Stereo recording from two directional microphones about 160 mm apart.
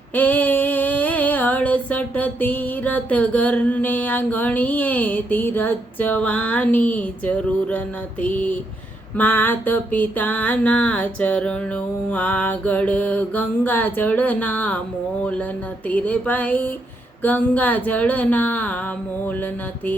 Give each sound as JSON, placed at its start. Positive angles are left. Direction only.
{"t": 0.1, "sound": "female singing", "side_deg": 10}